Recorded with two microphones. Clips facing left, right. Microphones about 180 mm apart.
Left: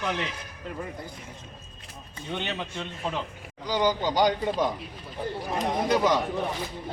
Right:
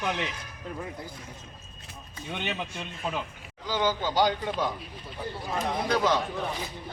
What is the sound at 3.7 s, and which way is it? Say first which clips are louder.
Speech: left 3 dB; 15° left (ahead or behind).